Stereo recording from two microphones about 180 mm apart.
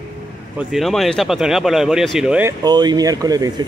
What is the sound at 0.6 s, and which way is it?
Speech, centre (ahead or behind).